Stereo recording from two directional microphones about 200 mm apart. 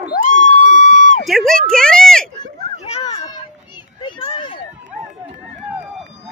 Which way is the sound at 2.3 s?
25° left (ahead or behind).